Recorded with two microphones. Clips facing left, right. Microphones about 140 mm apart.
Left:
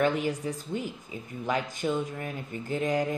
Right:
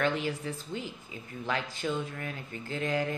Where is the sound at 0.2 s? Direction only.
15° left (ahead or behind).